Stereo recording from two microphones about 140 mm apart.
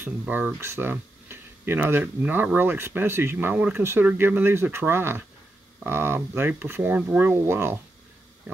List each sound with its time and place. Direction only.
0.0 s speech: 10° right (ahead or behind)